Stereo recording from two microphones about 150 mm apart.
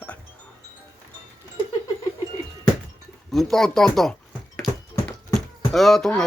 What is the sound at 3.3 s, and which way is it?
Speech, 5° left (ahead or behind).